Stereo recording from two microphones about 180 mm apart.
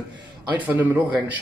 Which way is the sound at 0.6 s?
10° right (ahead or behind).